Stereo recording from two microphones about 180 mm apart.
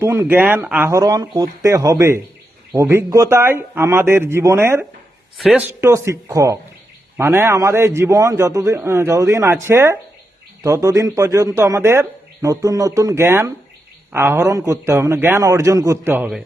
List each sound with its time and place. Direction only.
0.0 s speech: 15° right (ahead or behind)